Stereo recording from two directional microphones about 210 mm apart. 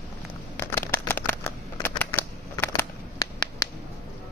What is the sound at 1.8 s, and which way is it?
Shuffling cards, 10° left (ahead or behind).